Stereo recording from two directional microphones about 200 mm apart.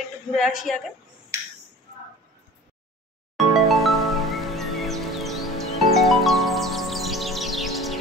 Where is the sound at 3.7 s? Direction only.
Centre (ahead or behind).